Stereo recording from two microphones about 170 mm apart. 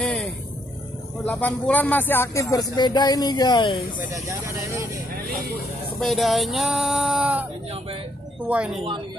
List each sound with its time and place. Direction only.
0.0 s vehicle: 5° left (ahead or behind)
1.2 s speech: 10° left (ahead or behind); by 3.8 s 25° left (ahead or behind)
4.1 s speech: 20° right (ahead or behind)
5.1 s vehicle: 65° right (ahead or behind)
5.9 s speech: centre (ahead or behind)
8.5 s speech: 5° right (ahead or behind)
8.7 s speech: 30° right (ahead or behind)